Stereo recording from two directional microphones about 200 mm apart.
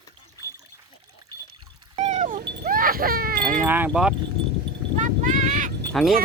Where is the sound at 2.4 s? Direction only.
50° right (ahead or behind).